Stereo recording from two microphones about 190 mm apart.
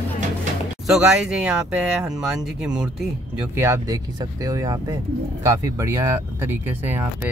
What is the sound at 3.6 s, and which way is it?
Speech, 15° right (ahead or behind).